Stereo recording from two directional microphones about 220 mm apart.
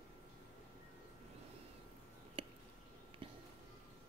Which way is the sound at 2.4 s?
25° right (ahead or behind).